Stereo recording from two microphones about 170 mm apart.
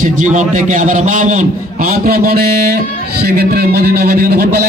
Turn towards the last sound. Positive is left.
turn(degrees=-70)  # may be behind; listen again after turning